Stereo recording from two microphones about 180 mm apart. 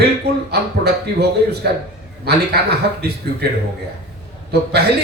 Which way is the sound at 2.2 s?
65° right (ahead or behind).